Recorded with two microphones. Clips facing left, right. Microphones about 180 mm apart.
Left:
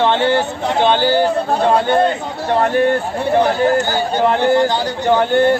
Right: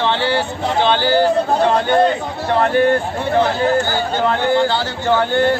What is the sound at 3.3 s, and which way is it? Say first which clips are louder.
Speech: left 2 dB; 15° left (ahead or behind).